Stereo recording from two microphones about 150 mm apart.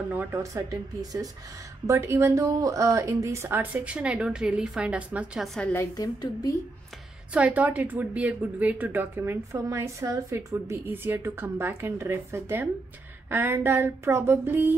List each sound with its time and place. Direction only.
0.1 s a woman's voice: 15° right (ahead or behind); by 5.7 s centre (ahead or behind)
5.7 s a woman's voice: 20° left (ahead or behind)
7.3 s a woman's voice: 10° right (ahead or behind)